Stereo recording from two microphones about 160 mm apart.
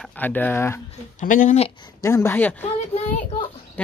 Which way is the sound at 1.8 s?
20° left (ahead or behind).